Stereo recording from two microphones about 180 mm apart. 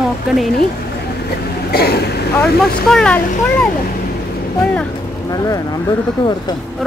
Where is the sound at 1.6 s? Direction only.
60° left (ahead or behind).